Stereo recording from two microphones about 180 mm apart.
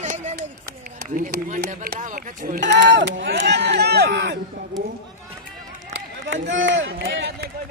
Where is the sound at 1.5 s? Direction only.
65° right (ahead or behind).